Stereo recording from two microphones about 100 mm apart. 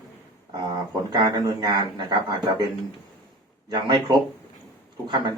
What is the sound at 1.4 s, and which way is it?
A man's voice, 45° right (ahead or behind).